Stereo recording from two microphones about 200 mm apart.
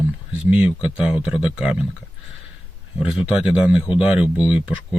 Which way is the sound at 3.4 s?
5° right (ahead or behind).